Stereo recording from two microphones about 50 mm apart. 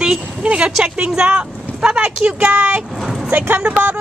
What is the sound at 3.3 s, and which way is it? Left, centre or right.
Speech, right.